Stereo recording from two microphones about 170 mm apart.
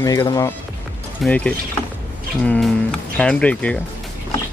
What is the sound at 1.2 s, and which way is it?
Speech, 5° left (ahead or behind).